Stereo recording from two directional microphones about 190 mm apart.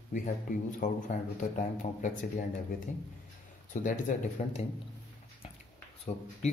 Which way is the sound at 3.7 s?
45° left (ahead or behind).